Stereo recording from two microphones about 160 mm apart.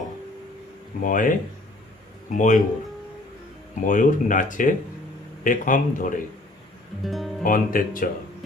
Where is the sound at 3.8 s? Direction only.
55° left (ahead or behind).